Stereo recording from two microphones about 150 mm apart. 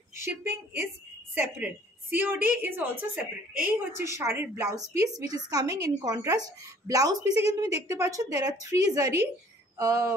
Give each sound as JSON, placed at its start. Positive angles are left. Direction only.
{"t": 0.1, "sound": "a woman's voice", "side_deg": -15}